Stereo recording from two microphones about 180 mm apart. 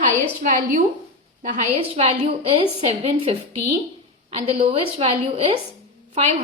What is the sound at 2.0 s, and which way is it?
A woman's voice, 30° right (ahead or behind).